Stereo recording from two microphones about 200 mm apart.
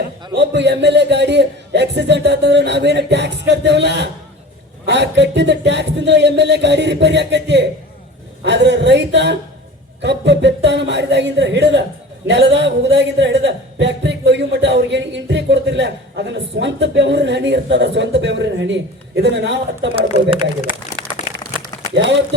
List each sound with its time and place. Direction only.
0.3 s a man's voice: 60° right (ahead or behind)